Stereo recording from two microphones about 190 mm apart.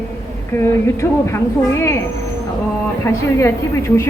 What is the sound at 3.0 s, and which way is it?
A woman's voice, 15° left (ahead or behind).